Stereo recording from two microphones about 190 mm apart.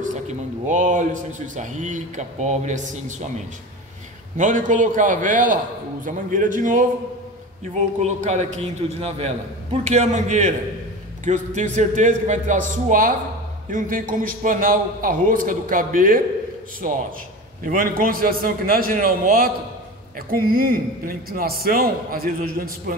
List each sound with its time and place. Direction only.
0.0 s a man's voice: 40° right (ahead or behind)
4.4 s a man's voice: 40° right (ahead or behind)
8.0 s a man's voice: 35° right (ahead or behind)